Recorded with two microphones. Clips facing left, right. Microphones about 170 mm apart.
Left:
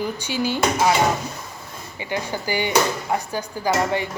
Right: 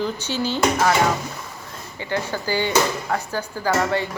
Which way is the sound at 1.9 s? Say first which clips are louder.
Right 1 dB; 15° left (ahead or behind).